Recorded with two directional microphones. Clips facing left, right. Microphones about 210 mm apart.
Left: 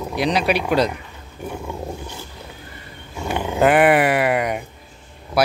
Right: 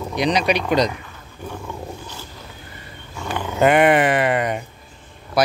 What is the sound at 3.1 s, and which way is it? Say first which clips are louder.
Dog: left 3 dB; 15° left (ahead or behind).